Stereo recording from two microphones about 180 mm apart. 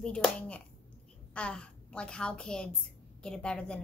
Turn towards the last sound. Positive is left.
turn(degrees=5)  # may be behind; listen again after turning